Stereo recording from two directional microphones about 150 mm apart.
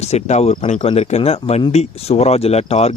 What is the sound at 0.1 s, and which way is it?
Speech, 45° left (ahead or behind).